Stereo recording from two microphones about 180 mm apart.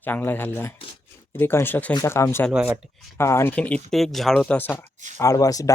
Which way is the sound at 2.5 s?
5° right (ahead or behind).